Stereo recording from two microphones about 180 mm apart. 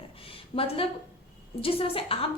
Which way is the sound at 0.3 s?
30° left (ahead or behind).